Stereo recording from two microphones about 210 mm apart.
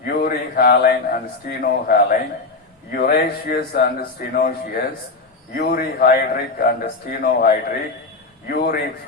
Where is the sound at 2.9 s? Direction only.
45° left (ahead or behind).